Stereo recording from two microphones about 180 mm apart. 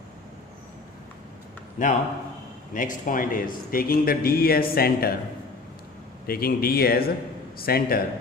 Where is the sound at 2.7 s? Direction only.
45° left (ahead or behind).